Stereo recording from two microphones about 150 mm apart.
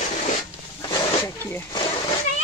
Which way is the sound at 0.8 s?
30° left (ahead or behind).